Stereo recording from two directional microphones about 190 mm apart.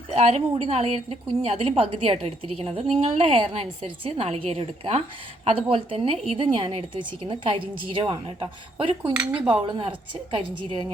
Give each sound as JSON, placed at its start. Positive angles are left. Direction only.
{"t": 0.1, "sound": "a woman's voice", "side_deg": -35}
{"t": 9.4, "sound": "speech", "side_deg": -5}
{"t": 9.6, "sound": "a woman's voice", "side_deg": -25}